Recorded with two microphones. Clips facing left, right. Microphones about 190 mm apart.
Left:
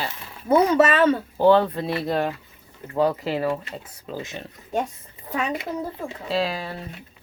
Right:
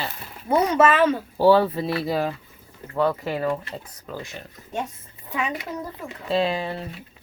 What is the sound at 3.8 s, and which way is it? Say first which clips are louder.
Speech: left 2 dB; 20° left (ahead or behind).